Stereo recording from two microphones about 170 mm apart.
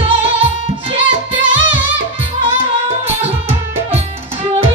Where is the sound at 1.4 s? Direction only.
90° right.